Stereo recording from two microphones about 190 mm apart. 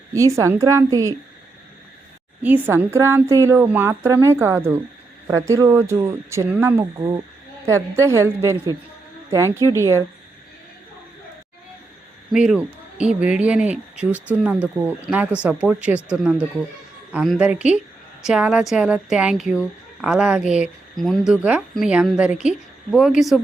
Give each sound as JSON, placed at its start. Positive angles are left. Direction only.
{"t": 0.1, "sound": "a woman's voice", "side_deg": -15}
{"t": 2.4, "sound": "a woman's voice", "side_deg": -10}
{"t": 12.3, "sound": "a woman's voice", "side_deg": -5}